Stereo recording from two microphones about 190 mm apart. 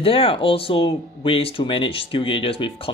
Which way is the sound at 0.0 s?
30° left (ahead or behind).